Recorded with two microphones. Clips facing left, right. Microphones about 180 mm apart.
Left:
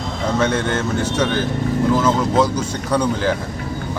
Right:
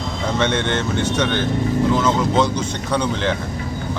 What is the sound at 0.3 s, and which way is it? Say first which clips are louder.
Speech: left 1 dB; 5° left (ahead or behind).